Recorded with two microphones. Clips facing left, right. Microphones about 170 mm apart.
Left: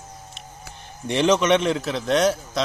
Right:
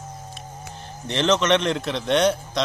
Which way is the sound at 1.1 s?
10° left (ahead or behind).